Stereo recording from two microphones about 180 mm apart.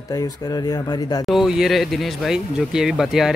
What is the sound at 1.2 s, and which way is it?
Speech, centre (ahead or behind).